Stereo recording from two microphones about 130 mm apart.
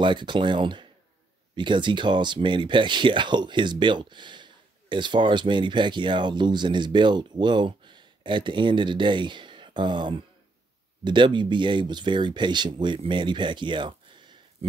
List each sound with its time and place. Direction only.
0.0 s speech: 40° right (ahead or behind)